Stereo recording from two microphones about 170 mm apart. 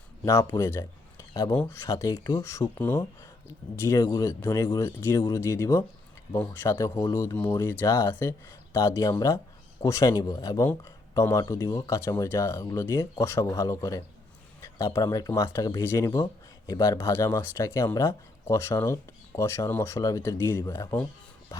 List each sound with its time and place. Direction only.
0.3 s speech: 15° left (ahead or behind)